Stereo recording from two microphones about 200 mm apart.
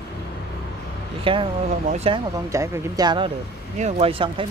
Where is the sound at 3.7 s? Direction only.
35° right (ahead or behind).